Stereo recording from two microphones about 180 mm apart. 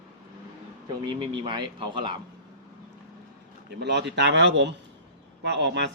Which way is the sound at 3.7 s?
70° right (ahead or behind).